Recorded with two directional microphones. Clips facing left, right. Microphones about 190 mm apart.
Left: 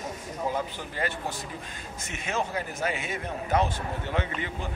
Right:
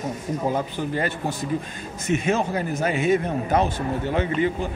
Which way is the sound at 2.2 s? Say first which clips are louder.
Right 3 dB; 40° right (ahead or behind).